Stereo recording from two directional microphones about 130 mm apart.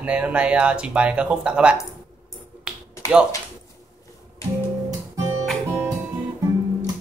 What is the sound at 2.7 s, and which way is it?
Finger snapping, 5° right (ahead or behind).